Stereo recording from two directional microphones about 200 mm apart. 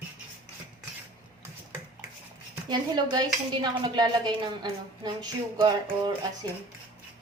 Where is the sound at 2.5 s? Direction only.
20° right (ahead or behind).